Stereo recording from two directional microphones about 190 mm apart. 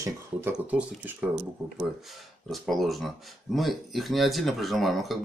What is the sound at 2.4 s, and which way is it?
Speech, centre (ahead or behind).